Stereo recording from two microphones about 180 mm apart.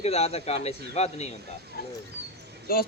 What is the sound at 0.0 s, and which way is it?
Speech, 35° left (ahead or behind).